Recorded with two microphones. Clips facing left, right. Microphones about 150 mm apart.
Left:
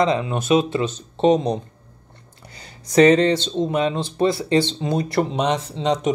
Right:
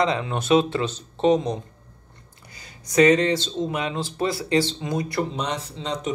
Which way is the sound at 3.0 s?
30° left (ahead or behind).